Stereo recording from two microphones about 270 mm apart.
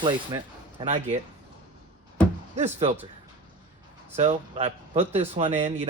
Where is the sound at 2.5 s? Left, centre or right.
Right.